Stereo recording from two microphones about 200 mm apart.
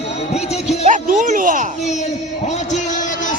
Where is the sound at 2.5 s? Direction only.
35° left (ahead or behind).